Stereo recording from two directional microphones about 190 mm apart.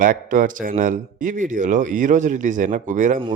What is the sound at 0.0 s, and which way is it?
A man's voice, 45° right (ahead or behind).